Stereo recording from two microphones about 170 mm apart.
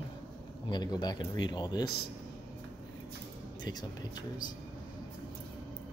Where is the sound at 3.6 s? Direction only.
25° left (ahead or behind).